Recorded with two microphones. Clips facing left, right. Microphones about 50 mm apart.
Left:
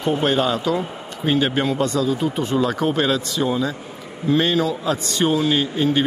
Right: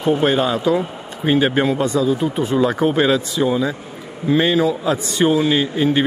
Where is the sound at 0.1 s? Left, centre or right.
Centre.